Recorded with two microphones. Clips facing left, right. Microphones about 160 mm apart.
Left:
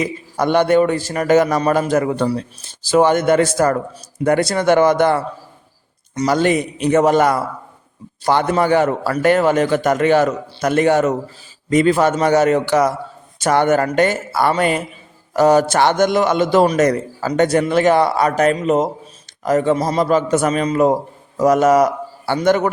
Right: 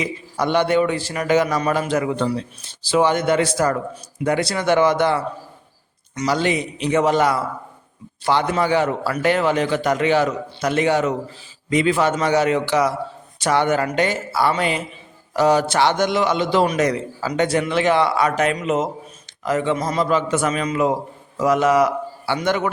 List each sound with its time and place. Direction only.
0.0 s a man's voice: 50° left (ahead or behind)
6.2 s a man's voice: 50° left (ahead or behind)